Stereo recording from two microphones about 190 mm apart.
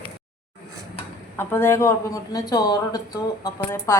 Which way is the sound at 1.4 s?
10° left (ahead or behind).